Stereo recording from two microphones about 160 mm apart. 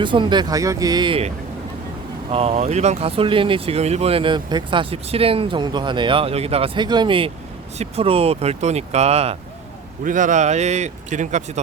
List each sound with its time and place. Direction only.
0.0 s speech: 30° right (ahead or behind)
2.3 s speech: 40° right (ahead or behind)
10.0 s speech: 55° right (ahead or behind)